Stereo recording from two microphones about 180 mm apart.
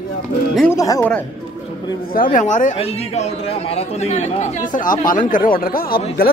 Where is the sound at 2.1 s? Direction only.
50° left (ahead or behind).